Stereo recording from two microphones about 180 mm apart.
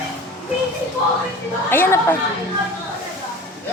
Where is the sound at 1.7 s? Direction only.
10° left (ahead or behind).